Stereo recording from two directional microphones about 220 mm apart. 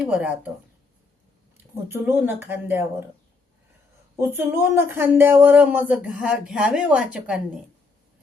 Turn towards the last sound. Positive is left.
turn(degrees=-5)  # may be behind; listen again after turning